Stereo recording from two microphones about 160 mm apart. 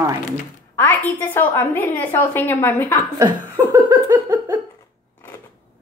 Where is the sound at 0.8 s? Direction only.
10° left (ahead or behind).